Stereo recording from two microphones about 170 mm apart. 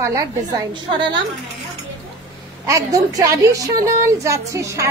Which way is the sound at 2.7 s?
20° right (ahead or behind).